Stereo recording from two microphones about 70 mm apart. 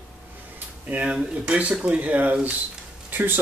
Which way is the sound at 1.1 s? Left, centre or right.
Centre.